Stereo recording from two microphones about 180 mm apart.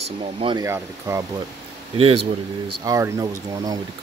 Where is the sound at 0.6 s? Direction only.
15° right (ahead or behind).